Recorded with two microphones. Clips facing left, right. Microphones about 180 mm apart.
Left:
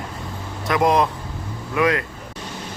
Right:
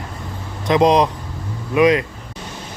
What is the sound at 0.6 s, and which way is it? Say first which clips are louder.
Speech: right 4 dB; 20° right (ahead or behind).